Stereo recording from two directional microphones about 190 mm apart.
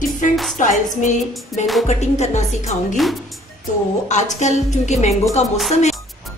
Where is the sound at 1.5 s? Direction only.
Centre (ahead or behind).